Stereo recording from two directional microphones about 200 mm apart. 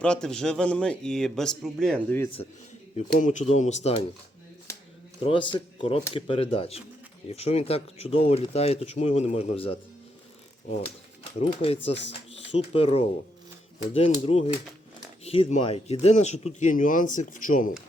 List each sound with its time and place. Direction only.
0.0 s speech: 5° left (ahead or behind)
2.9 s speech: 40° left (ahead or behind)
5.2 s speech: 25° left (ahead or behind); by 17.7 s 40° left (ahead or behind)